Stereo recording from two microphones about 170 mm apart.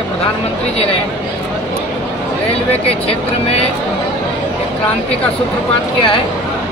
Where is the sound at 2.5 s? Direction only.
35° left (ahead or behind).